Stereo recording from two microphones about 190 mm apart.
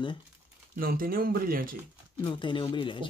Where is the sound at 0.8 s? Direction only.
50° right (ahead or behind).